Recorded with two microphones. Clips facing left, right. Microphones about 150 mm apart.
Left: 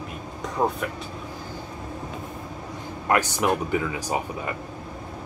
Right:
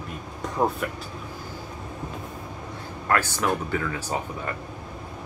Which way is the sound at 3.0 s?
15° left (ahead or behind).